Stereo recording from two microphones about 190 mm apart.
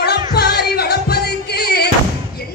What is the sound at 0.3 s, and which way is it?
Music, 55° left (ahead or behind).